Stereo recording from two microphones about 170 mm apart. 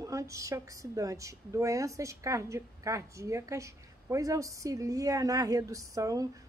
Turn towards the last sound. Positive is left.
turn(degrees=-20)  # may be behind; listen again after turning